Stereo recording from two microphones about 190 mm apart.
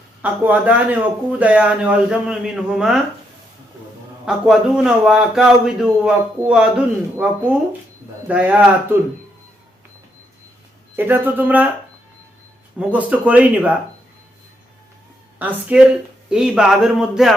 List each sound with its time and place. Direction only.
0.2 s speech: 10° right (ahead or behind)
4.3 s a man's voice: 5° right (ahead or behind)
8.3 s speech: 5° right (ahead or behind)
10.9 s speech: 10° right (ahead or behind)
12.8 s speech: 5° right (ahead or behind)
15.4 s a man's voice: 10° right (ahead or behind)